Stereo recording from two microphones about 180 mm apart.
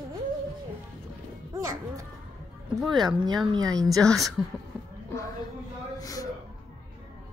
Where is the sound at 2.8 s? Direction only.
Centre (ahead or behind).